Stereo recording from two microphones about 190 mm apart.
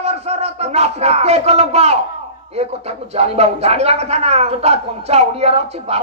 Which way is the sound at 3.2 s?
35° right (ahead or behind).